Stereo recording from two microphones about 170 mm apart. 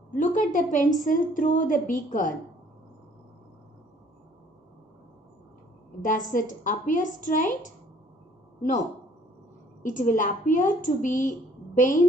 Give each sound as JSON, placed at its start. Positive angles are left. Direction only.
{"t": 0.1, "sound": "a woman's voice", "side_deg": 50}
{"t": 6.0, "sound": "a woman's voice", "side_deg": 50}
{"t": 9.8, "sound": "a woman's voice", "side_deg": 50}